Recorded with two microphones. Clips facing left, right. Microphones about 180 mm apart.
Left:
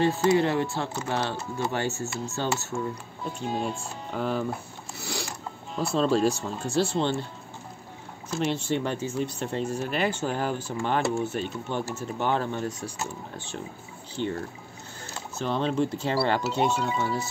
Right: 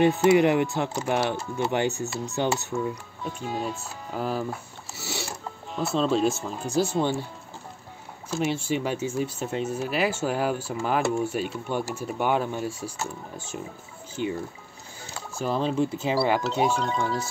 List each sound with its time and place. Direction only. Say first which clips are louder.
0.0 s speech: right 3 dB; 20° right (ahead or behind)
3.5 s speech: left 1 dB; 5° right (ahead or behind)
4.9 s a sound: even; 5° right (ahead or behind)
5.8 s speech: even; centre (ahead or behind)
8.3 s speech: right 1 dB; 5° right (ahead or behind)
14.2 s speech: right 1 dB; 5° right (ahead or behind)
16.7 s speech: right 1 dB; 5° left (ahead or behind)